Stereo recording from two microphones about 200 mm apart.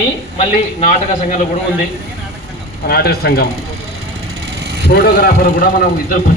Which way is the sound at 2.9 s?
50° left (ahead or behind).